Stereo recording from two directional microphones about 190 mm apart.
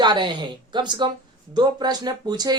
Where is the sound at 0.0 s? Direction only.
25° right (ahead or behind).